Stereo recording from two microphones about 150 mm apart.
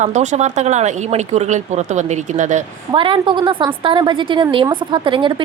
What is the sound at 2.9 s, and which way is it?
A woman's voice, 35° right (ahead or behind).